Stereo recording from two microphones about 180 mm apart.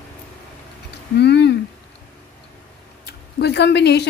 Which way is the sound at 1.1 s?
70° left (ahead or behind).